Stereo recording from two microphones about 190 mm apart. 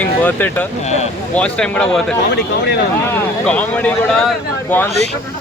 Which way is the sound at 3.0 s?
5° left (ahead or behind).